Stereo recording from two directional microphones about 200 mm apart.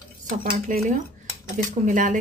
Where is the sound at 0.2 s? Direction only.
45° right (ahead or behind).